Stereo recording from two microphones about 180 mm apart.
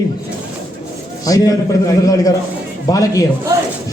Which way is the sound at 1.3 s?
20° left (ahead or behind).